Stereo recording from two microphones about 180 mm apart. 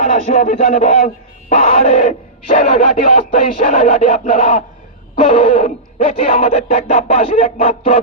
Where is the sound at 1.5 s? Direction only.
35° left (ahead or behind).